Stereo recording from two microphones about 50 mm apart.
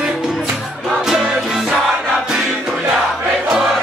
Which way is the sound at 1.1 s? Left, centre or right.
Centre.